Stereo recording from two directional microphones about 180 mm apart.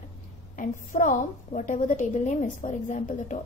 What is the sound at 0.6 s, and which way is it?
A woman's voice, 45° left (ahead or behind).